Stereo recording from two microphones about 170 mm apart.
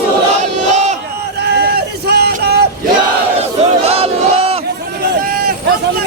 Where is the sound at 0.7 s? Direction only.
45° right (ahead or behind).